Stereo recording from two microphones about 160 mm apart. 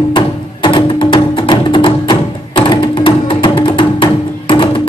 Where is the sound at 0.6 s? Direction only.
30° left (ahead or behind).